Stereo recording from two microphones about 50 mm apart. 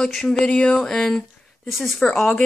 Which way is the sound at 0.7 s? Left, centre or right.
Centre.